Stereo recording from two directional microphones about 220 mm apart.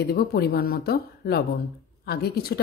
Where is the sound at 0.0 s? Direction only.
45° left (ahead or behind).